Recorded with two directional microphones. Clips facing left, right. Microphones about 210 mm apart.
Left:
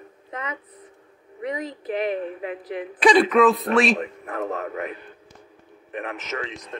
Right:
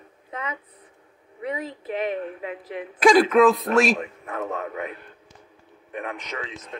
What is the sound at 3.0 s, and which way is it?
Speech, centre (ahead or behind).